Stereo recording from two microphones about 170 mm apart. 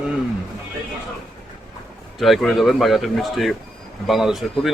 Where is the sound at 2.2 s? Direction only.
Centre (ahead or behind).